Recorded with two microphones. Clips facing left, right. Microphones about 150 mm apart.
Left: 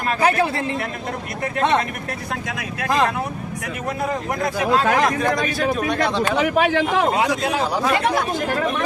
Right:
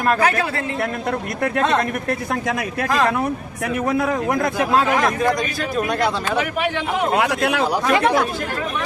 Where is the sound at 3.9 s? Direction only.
70° right (ahead or behind).